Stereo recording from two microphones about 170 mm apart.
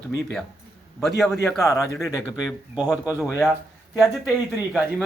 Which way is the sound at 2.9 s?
10° right (ahead or behind).